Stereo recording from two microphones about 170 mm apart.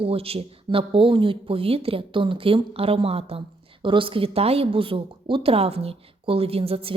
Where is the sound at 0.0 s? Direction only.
35° right (ahead or behind).